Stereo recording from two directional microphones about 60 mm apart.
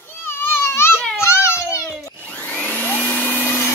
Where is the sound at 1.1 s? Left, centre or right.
Left.